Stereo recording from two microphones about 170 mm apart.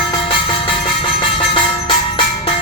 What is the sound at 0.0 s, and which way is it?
Music, 30° left (ahead or behind).